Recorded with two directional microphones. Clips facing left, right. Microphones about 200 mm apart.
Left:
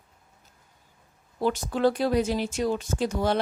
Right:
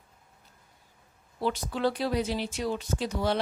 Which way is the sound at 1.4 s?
45° left (ahead or behind).